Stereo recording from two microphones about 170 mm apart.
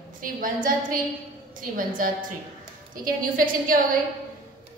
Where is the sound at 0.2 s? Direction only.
55° right (ahead or behind).